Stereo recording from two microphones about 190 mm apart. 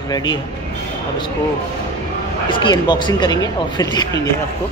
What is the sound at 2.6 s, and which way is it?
Speech, 25° left (ahead or behind).